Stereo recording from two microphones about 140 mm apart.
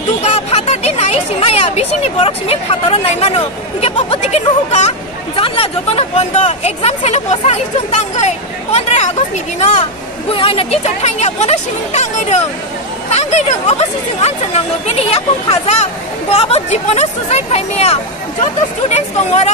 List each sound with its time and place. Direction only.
0.2 s a sound: 50° left (ahead or behind)
2.1 s speech: 40° left (ahead or behind)
10.3 s speech: 40° left (ahead or behind)